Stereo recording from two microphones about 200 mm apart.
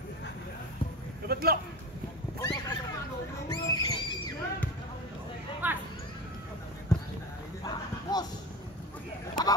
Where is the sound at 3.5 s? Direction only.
20° left (ahead or behind).